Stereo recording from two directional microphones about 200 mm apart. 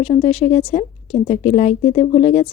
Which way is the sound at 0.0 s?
30° left (ahead or behind).